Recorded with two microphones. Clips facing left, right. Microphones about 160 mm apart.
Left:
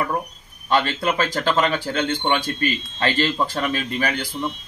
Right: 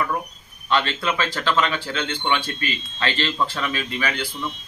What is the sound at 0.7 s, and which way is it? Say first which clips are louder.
Speech: left 2 dB; 45° left (ahead or behind).